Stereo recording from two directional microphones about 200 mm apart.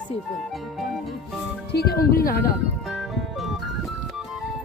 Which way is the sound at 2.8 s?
Centre (ahead or behind).